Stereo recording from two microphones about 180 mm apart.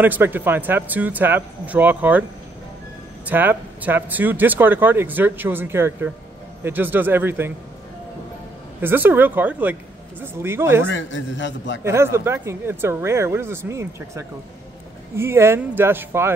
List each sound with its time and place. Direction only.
0.0 s speech: 10° right (ahead or behind)
3.3 s speech: 10° right (ahead or behind)
8.8 s speech: 10° right (ahead or behind)
10.9 s a man's voice: 90° left
11.8 s speech: 15° right (ahead or behind)